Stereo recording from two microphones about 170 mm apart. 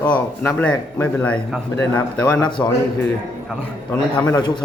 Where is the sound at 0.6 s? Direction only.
10° left (ahead or behind).